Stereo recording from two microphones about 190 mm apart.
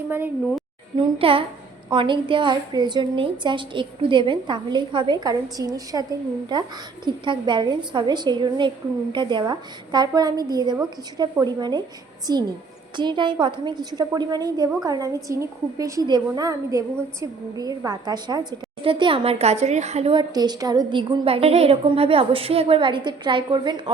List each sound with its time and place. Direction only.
1.2 s a woman's voice: 30° right (ahead or behind)
13.0 s a woman's voice: 25° right (ahead or behind)